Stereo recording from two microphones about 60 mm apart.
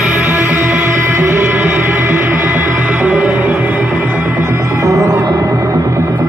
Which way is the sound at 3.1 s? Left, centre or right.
Centre.